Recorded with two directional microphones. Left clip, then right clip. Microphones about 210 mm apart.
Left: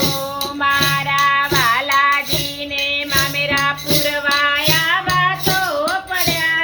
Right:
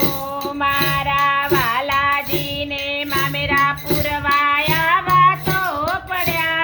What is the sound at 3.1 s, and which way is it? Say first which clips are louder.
Music: right 1 dB; 50° right (ahead or behind).